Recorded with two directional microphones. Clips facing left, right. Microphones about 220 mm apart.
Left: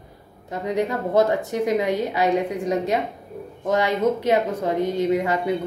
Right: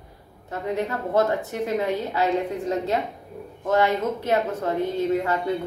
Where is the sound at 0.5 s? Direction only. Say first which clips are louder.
Left 3 dB; 15° left (ahead or behind).